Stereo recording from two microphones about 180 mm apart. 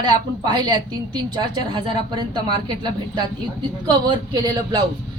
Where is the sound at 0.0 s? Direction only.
25° right (ahead or behind).